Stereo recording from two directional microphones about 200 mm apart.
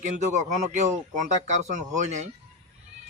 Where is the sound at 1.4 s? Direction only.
35° right (ahead or behind).